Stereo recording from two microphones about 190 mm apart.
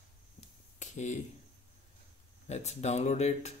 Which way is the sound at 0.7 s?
40° left (ahead or behind).